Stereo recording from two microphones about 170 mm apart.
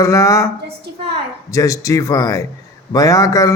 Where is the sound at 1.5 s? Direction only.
20° left (ahead or behind).